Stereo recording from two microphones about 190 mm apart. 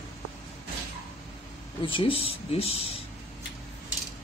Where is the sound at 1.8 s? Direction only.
30° left (ahead or behind).